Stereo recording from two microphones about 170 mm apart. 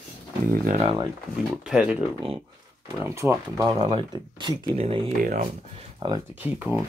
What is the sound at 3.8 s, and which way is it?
Speech, 30° right (ahead or behind).